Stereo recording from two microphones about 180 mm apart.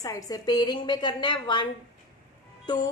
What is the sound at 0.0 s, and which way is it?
A woman's voice, 20° left (ahead or behind).